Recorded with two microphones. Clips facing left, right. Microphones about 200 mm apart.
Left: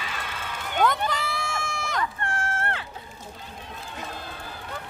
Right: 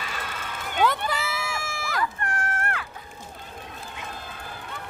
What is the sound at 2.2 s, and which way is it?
Run, 25° left (ahead or behind).